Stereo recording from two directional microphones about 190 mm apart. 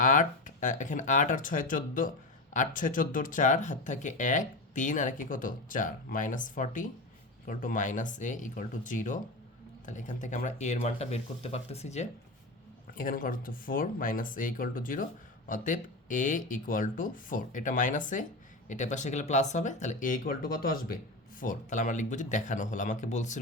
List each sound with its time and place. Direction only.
0.0 s speech: 45° left (ahead or behind)
12.9 s speech: 45° left (ahead or behind)